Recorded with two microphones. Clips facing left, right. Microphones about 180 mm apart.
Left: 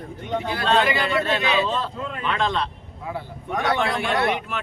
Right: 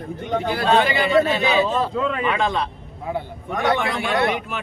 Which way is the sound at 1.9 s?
90° right.